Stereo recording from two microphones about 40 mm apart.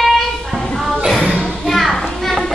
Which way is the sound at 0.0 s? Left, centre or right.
Centre.